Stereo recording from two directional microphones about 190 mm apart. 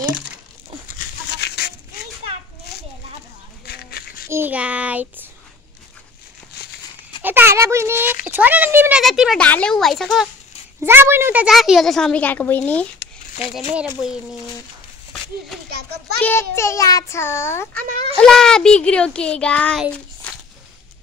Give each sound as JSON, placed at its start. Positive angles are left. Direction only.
{"t": 1.3, "sound": "chicken", "side_deg": 60}
{"t": 3.6, "sound": "a sound", "side_deg": 55}
{"t": 4.3, "sound": "child singing", "side_deg": -10}
{"t": 7.2, "sound": "a child's voice", "side_deg": -10}
{"t": 10.9, "sound": "a woman's voice", "side_deg": -10}
{"t": 13.7, "sound": "a child's voice", "side_deg": -5}
{"t": 16.2, "sound": "a child's voice", "side_deg": 10}
{"t": 17.7, "sound": "a child's voice", "side_deg": -45}
{"t": 18.2, "sound": "a woman's voice", "side_deg": 5}
{"t": 19.8, "sound": "a sound", "side_deg": 5}